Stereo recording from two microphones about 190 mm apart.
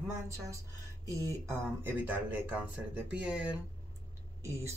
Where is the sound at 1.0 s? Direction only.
15° right (ahead or behind).